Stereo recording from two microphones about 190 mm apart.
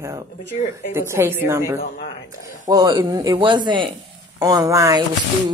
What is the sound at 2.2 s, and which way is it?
Speech, 45° left (ahead or behind).